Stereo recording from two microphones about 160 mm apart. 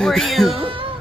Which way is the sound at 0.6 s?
35° right (ahead or behind).